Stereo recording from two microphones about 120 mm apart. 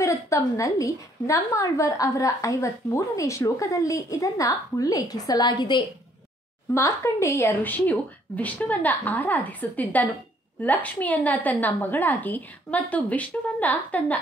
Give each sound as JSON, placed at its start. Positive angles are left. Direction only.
{"t": 0.0, "sound": "a woman's voice", "side_deg": 25}
{"t": 6.7, "sound": "a woman's voice", "side_deg": 25}